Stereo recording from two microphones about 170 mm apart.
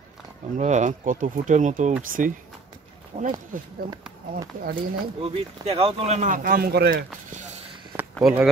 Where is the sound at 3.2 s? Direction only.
50° right (ahead or behind).